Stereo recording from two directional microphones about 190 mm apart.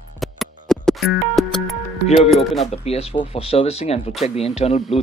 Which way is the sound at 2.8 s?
30° left (ahead or behind).